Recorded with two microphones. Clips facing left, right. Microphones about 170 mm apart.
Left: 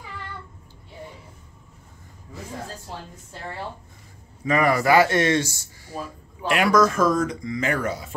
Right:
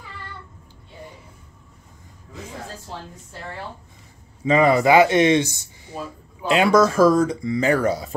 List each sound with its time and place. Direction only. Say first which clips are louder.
4.5 s speech: right 4 dB; 25° right (ahead or behind)